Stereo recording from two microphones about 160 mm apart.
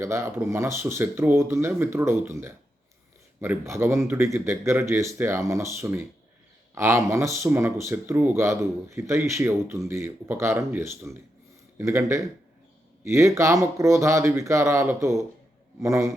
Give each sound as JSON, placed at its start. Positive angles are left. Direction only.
{"t": 0.0, "sound": "speech", "side_deg": -15}